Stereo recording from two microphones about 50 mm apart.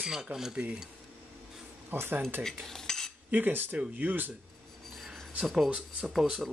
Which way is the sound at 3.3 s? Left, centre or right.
Right.